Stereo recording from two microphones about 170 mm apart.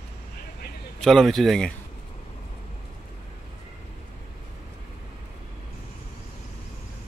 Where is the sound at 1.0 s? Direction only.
Centre (ahead or behind).